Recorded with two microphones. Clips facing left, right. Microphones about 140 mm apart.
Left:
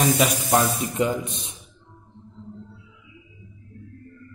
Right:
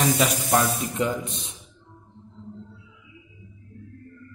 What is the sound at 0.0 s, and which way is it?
A man's voice, 15° left (ahead or behind).